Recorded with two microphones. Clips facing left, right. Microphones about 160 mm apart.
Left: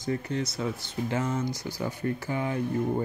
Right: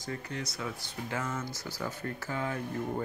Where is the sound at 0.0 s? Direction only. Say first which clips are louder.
Left 8 dB; 25° left (ahead or behind).